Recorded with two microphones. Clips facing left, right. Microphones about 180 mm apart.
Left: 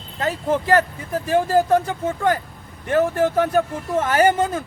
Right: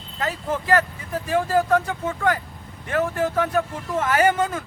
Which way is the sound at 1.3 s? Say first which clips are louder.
Left 3 dB; 35° left (ahead or behind).